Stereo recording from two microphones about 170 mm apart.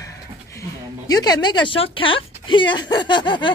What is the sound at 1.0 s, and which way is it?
A woman's voice, 20° left (ahead or behind).